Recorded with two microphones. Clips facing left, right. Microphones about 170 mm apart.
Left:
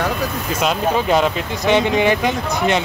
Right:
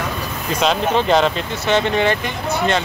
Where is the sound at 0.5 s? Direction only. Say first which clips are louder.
Right 2 dB; 5° left (ahead or behind).